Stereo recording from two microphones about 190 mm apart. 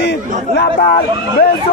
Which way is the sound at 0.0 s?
60° left (ahead or behind).